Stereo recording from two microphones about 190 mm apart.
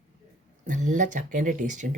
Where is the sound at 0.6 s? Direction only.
40° right (ahead or behind).